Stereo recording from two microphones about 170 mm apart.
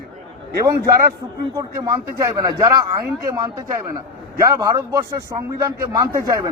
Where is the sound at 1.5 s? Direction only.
20° right (ahead or behind).